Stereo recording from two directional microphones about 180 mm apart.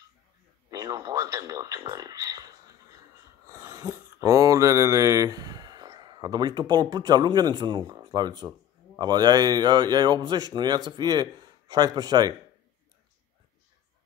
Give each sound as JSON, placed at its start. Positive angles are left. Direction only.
{"t": 0.7, "sound": "speech", "side_deg": -20}
{"t": 3.4, "sound": "mantra", "side_deg": -15}
{"t": 10.9, "sound": "speech", "side_deg": -20}